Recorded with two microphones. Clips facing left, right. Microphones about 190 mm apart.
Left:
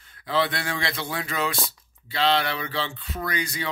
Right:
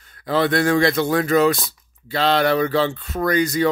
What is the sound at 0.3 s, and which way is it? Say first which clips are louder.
Speech: right 8 dB; 45° right (ahead or behind).